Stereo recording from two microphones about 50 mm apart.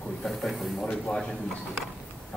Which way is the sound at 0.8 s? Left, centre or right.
Left.